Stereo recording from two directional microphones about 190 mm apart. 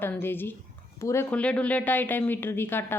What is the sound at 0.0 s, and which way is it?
A woman's voice, 10° left (ahead or behind).